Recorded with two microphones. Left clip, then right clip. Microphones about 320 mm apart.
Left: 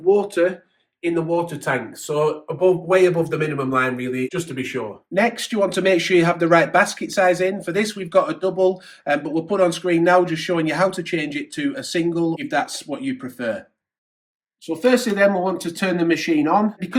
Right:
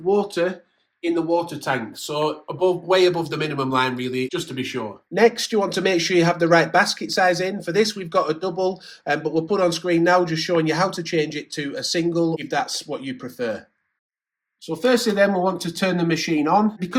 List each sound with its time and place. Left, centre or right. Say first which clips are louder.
0.1 s speech: left 3 dB; right
14.7 s speech: left 1 dB; right